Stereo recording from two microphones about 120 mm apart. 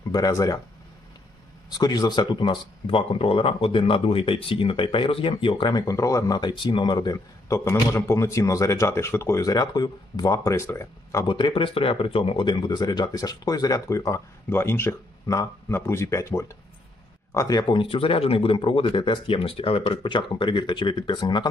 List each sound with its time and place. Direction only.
0.1 s speech: 30° left (ahead or behind)
1.8 s speech: 35° left (ahead or behind)
11.3 s speech: 45° left (ahead or behind)